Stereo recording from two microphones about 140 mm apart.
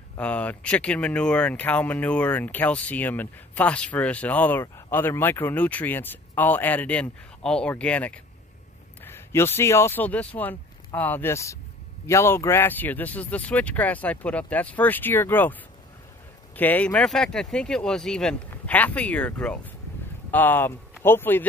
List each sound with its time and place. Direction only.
0.2 s speech: 10° left (ahead or behind)
16.5 s speech: 10° left (ahead or behind)